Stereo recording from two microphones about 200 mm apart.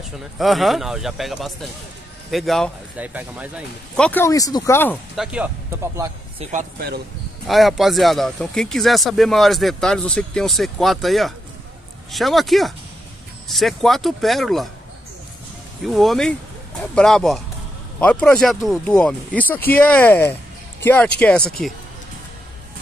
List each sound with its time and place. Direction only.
0.4 s speech: centre (ahead or behind)
3.9 s speech: 5° left (ahead or behind)
5.1 s speech: 5° right (ahead or behind)
6.4 s speech: 30° right (ahead or behind)
7.4 s speech: centre (ahead or behind)
15.8 s speech: centre (ahead or behind)